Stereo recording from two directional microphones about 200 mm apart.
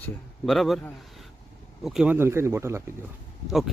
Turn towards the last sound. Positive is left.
turn(degrees=0)  # may be behind; listen again after turning